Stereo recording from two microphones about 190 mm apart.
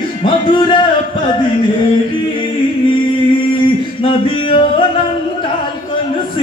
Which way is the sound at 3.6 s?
25° left (ahead or behind).